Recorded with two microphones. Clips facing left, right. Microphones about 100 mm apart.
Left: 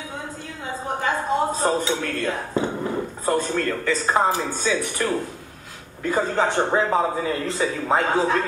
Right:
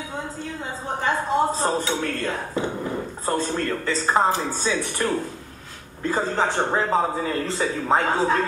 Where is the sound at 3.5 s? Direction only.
25° right (ahead or behind).